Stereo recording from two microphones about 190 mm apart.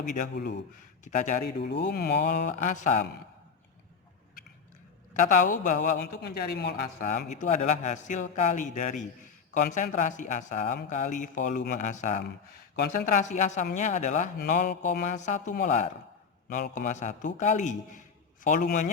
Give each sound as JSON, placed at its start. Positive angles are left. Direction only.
{"t": 0.0, "sound": "speech", "side_deg": 45}
{"t": 0.3, "sound": "speech", "side_deg": 65}
{"t": 1.0, "sound": "speech", "side_deg": 40}
{"t": 1.8, "sound": "speech", "side_deg": 60}
{"t": 2.5, "sound": "speech", "side_deg": 45}
{"t": 5.1, "sound": "speech", "side_deg": 45}
{"t": 6.0, "sound": "speech", "side_deg": 60}
{"t": 7.0, "sound": "speech", "side_deg": 45}